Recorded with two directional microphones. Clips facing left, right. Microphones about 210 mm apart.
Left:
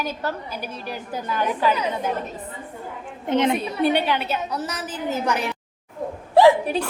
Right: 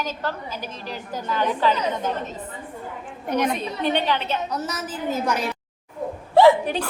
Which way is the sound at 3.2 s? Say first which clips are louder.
Left 3 dB; 25° left (ahead or behind).